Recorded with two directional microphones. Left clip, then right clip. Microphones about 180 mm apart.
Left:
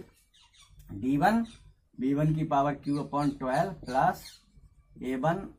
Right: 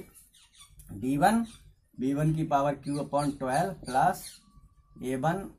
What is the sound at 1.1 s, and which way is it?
Speech, 35° right (ahead or behind).